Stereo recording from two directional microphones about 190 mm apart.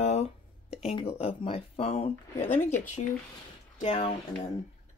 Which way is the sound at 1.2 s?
30° left (ahead or behind).